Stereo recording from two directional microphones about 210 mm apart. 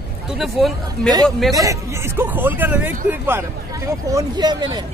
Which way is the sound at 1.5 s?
15° right (ahead or behind).